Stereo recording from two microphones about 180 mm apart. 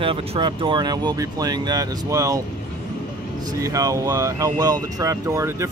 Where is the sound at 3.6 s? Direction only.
20° right (ahead or behind).